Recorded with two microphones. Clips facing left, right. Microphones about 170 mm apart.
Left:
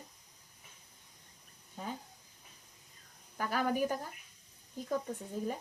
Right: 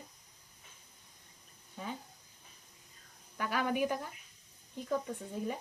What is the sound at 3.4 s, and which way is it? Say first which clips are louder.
A child's voice: even; 40° left (ahead or behind).